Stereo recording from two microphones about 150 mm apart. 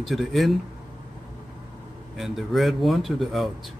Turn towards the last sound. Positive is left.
turn(degrees=0)  # may be behind; listen again after turning